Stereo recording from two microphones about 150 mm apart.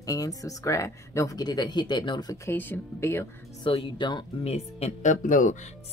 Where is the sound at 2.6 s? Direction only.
15° left (ahead or behind).